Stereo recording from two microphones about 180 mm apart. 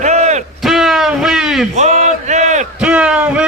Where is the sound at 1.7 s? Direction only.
40° right (ahead or behind).